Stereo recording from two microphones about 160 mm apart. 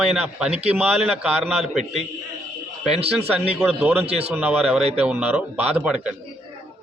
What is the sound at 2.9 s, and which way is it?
Speech, 40° right (ahead or behind).